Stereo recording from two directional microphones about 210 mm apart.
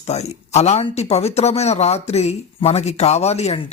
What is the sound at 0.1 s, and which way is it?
Speech, 30° left (ahead or behind).